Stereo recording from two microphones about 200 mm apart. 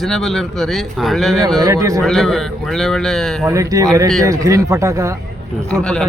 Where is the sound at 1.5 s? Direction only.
15° right (ahead or behind).